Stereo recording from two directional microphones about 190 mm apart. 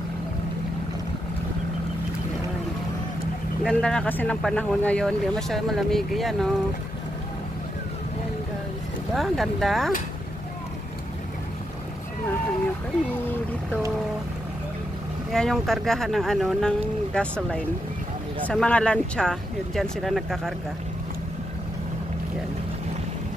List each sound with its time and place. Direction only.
3.6 s speech: 5° left (ahead or behind)
9.1 s speech: centre (ahead or behind)
15.3 s speech: centre (ahead or behind)